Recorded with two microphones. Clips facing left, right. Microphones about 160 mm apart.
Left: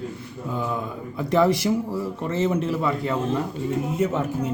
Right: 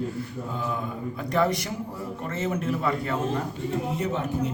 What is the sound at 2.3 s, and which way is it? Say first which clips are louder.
Speech: left 5 dB; 30° left (ahead or behind).